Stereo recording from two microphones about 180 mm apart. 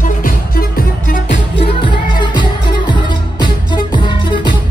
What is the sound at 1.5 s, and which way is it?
Music, 30° left (ahead or behind).